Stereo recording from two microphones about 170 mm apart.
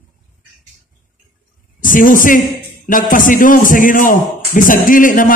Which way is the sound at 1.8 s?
50° left (ahead or behind).